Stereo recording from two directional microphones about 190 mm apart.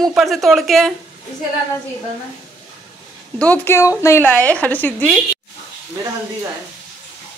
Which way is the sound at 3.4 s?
10° left (ahead or behind).